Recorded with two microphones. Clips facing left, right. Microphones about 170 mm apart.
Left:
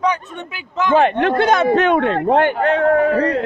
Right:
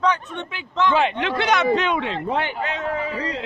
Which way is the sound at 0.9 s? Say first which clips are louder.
Left 7 dB; 55° left (ahead or behind).